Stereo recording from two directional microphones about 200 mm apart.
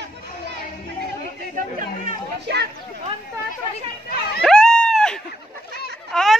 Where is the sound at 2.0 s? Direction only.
50° right (ahead or behind).